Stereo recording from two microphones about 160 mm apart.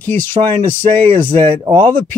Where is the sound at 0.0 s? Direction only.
10° left (ahead or behind).